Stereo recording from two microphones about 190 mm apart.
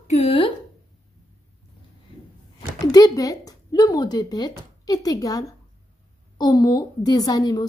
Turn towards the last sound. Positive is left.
turn(degrees=20)  # may be behind; listen again after turning